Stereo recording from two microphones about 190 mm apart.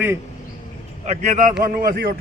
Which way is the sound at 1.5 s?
50° right (ahead or behind).